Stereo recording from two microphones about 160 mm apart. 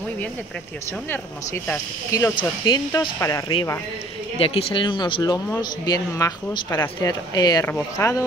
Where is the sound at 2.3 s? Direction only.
25° left (ahead or behind).